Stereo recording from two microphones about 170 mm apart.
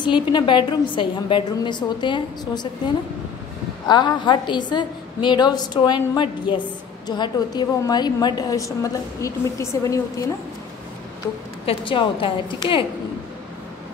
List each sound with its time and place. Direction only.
0.0 s a woman's voice: 30° left (ahead or behind)
3.8 s a woman's voice: 25° left (ahead or behind)
11.6 s a woman's voice: 30° left (ahead or behind)